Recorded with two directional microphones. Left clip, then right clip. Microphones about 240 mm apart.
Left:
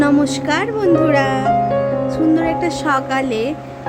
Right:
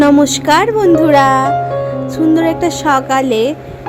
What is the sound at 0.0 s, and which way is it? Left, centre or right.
A woman's voice, centre.